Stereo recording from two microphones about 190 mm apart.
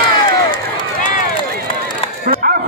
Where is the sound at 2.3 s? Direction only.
50° right (ahead or behind).